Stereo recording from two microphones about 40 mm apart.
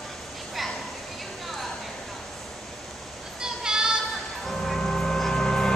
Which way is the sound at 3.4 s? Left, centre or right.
Centre.